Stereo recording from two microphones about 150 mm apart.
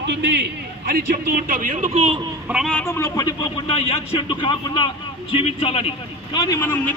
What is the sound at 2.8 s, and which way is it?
Speech, 20° left (ahead or behind).